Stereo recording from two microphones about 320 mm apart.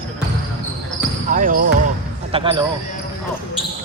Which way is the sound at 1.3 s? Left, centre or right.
Right.